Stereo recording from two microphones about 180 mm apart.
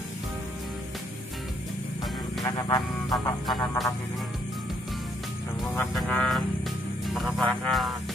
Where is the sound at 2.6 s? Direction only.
20° left (ahead or behind).